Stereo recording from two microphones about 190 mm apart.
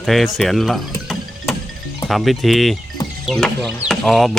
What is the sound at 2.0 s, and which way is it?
Speech, centre (ahead or behind).